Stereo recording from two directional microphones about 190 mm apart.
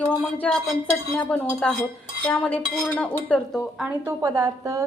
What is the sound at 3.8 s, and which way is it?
A woman's voice, 15° right (ahead or behind).